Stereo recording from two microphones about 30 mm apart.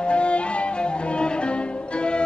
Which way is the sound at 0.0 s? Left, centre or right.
Left.